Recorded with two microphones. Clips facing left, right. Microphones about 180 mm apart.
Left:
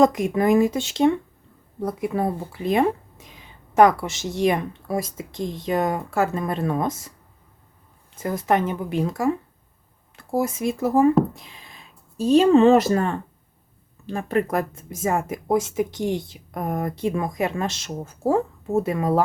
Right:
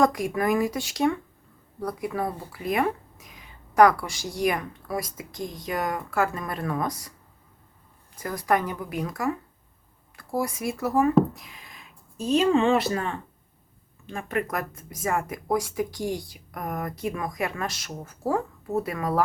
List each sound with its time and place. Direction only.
0.0 s speech: 20° left (ahead or behind)
8.1 s speech: 25° left (ahead or behind)